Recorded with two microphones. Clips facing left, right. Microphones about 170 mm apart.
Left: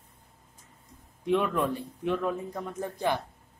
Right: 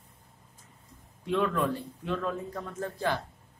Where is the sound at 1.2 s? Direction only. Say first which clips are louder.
Left 1 dB; 20° left (ahead or behind).